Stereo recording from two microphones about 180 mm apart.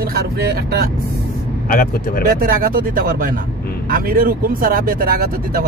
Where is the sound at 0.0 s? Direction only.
60° right (ahead or behind).